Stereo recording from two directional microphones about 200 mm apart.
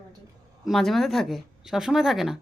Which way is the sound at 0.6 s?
Centre (ahead or behind).